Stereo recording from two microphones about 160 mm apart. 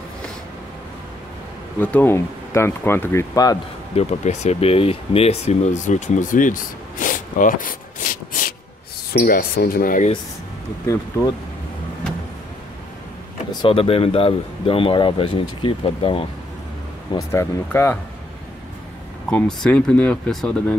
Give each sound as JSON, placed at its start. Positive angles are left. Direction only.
{"t": 1.8, "sound": "speech", "side_deg": 10}
{"t": 3.9, "sound": "speech", "side_deg": 45}
{"t": 13.5, "sound": "speech", "side_deg": 30}
{"t": 17.3, "sound": "speech", "side_deg": 15}
{"t": 19.2, "sound": "speech", "side_deg": 5}